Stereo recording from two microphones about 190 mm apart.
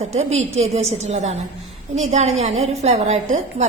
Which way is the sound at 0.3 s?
35° right (ahead or behind).